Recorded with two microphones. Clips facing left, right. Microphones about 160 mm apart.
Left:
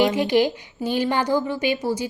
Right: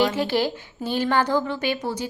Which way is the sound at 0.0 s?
15° left (ahead or behind).